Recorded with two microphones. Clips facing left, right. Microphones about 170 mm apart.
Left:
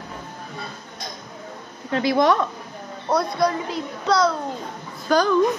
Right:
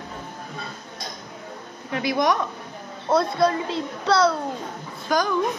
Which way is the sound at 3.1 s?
25° right (ahead or behind).